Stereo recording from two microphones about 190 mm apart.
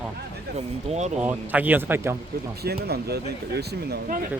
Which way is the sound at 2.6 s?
55° right (ahead or behind).